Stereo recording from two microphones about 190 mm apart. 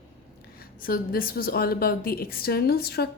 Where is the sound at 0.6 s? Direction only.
50° left (ahead or behind).